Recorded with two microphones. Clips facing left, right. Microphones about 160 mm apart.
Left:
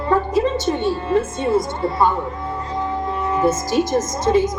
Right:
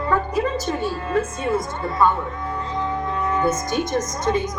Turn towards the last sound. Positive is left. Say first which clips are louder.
# left 5 dB
turn(degrees=30)  # may be behind; listen again after turning